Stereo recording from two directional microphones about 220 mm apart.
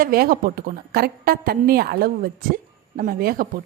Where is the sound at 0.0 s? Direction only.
40° right (ahead or behind).